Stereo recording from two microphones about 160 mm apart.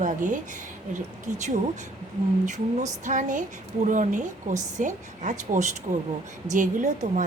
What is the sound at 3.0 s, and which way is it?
A woman's voice, 50° right (ahead or behind).